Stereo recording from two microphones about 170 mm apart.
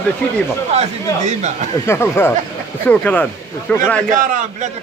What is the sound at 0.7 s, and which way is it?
Speech, 40° right (ahead or behind).